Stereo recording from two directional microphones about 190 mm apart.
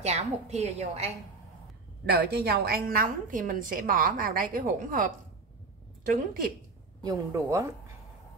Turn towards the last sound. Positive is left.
turn(degrees=-15)  # may be behind; listen again after turning